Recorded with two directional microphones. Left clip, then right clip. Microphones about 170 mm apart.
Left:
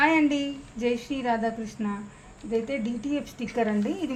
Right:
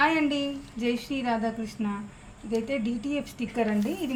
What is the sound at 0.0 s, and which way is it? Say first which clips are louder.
A woman's voice: left 2 dB; 45° left (ahead or behind).